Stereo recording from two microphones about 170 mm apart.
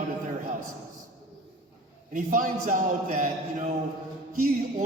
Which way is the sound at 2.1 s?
50° right (ahead or behind).